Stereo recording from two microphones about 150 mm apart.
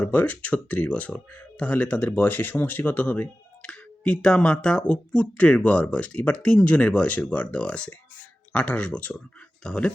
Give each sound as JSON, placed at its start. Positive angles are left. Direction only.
{"t": 0.0, "sound": "speech", "side_deg": 10}